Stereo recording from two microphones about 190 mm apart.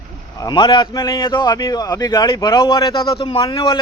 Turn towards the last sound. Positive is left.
turn(degrees=25)  # may be behind; listen again after turning